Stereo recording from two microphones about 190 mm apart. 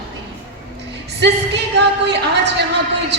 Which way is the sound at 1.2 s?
65° right (ahead or behind).